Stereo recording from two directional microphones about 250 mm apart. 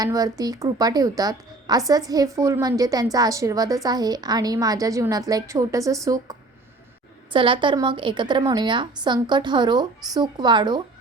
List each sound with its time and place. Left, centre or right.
0.0 s a woman's voice: centre
7.3 s a woman's voice: centre